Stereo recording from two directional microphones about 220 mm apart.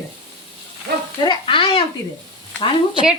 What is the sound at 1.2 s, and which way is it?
Speech, 25° left (ahead or behind).